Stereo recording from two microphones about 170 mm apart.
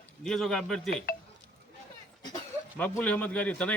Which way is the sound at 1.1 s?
60° left (ahead or behind).